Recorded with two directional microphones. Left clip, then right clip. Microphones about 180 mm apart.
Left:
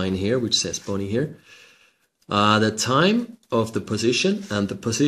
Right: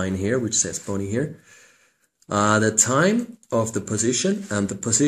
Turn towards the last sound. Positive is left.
turn(degrees=35)  # may be behind; listen again after turning